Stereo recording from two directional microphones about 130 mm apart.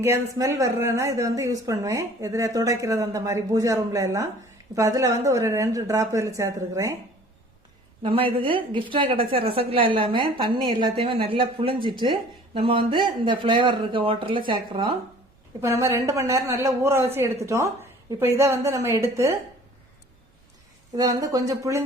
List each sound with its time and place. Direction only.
0.0 s speech: 20° right (ahead or behind)
8.0 s a woman's voice: 40° right (ahead or behind)
15.6 s speech: 20° right (ahead or behind)
20.9 s speech: 30° right (ahead or behind)